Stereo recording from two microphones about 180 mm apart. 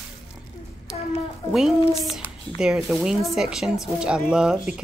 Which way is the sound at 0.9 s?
30° left (ahead or behind).